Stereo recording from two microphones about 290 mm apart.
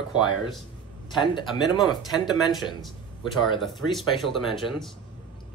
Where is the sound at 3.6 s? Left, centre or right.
Centre.